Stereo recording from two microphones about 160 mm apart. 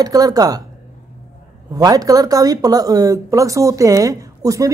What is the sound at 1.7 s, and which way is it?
A woman's voice, 25° right (ahead or behind).